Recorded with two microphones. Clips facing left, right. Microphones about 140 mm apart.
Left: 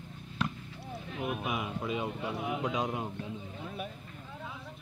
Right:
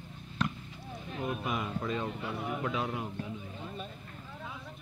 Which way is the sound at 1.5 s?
5° left (ahead or behind).